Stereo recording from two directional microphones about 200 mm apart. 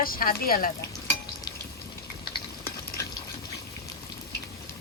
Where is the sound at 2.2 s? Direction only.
15° left (ahead or behind).